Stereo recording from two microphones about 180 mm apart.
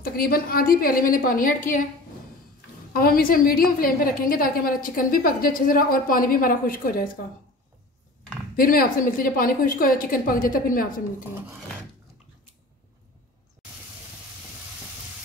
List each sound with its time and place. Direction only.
0.0 s a woman's voice: 55° left (ahead or behind)
2.9 s a woman's voice: 55° left (ahead or behind)
8.5 s a woman's voice: 50° left (ahead or behind)